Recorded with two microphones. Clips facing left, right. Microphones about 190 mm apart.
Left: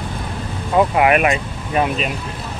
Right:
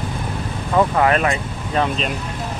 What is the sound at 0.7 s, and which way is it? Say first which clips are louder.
Speech: left 2 dB; 15° left (ahead or behind).